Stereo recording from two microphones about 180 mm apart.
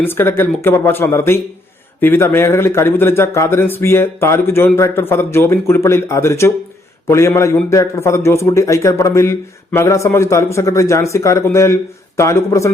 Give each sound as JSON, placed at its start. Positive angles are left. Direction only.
{"t": 0.0, "sound": "a man's voice", "side_deg": 10}